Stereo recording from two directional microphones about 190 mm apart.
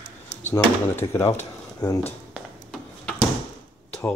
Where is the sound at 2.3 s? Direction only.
5° left (ahead or behind).